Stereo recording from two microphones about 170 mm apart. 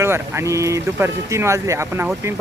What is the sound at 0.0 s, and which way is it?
Speech, 15° right (ahead or behind).